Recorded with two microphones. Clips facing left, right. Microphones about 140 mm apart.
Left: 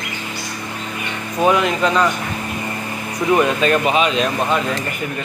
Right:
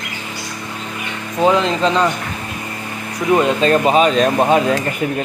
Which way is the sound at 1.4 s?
25° right (ahead or behind).